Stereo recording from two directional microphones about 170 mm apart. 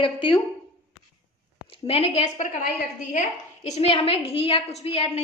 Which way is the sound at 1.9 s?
40° left (ahead or behind).